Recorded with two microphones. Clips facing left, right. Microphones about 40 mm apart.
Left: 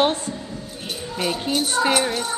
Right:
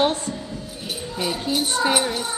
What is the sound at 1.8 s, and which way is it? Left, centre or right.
Speech, left.